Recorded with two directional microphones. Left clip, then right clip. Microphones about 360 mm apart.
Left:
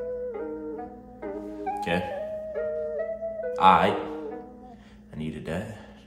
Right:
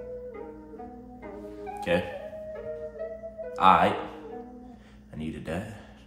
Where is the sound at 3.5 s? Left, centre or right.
Centre.